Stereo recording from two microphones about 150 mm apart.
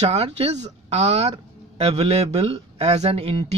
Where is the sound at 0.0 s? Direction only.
45° right (ahead or behind).